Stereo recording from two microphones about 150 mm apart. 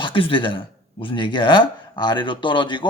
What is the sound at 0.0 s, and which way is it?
Speech, 35° left (ahead or behind).